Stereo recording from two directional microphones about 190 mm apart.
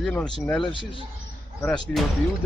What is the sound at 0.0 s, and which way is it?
Speech, 5° left (ahead or behind).